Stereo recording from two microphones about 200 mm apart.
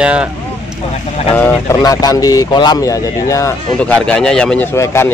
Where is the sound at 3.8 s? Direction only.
5° left (ahead or behind).